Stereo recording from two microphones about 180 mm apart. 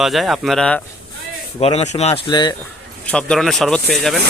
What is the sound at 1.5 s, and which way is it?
Speech, 35° left (ahead or behind).